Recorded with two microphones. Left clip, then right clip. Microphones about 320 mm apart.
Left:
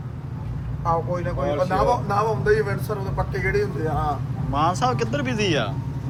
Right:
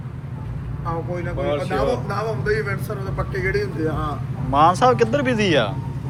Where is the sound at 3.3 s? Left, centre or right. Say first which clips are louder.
Right 1 dB; left.